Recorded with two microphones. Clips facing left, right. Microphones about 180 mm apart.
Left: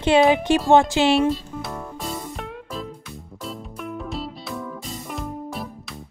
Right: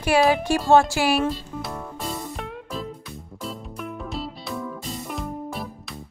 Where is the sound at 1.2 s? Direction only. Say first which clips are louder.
Left 4 dB; centre (ahead or behind).